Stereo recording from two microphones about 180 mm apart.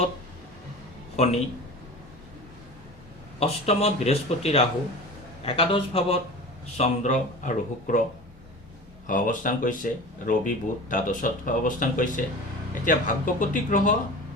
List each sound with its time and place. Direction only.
1.1 s speech: 40° left (ahead or behind)
3.4 s speech: 35° left (ahead or behind)
9.0 s speech: 45° left (ahead or behind)